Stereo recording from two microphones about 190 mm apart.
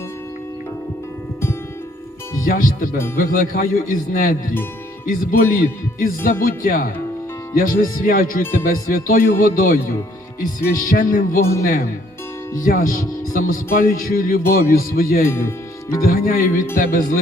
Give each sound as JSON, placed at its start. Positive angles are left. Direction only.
{"t": 2.4, "sound": "speech", "side_deg": 45}
{"t": 10.8, "sound": "speech", "side_deg": 45}
{"t": 15.3, "sound": "speech", "side_deg": 15}
{"t": 16.0, "sound": "speech", "side_deg": 50}